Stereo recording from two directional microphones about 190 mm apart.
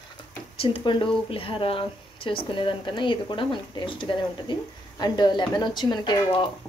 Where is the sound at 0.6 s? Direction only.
25° left (ahead or behind).